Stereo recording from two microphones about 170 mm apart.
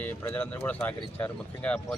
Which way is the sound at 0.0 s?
15° left (ahead or behind).